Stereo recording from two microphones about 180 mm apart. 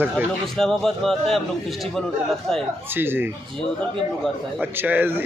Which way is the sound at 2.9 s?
10° right (ahead or behind).